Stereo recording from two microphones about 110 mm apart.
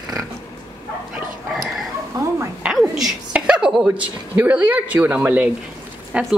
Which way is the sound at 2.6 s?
10° right (ahead or behind).